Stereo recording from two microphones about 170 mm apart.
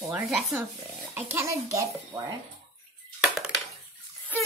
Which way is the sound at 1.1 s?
15° right (ahead or behind).